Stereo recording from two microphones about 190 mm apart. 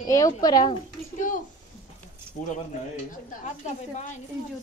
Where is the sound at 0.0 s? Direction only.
20° left (ahead or behind).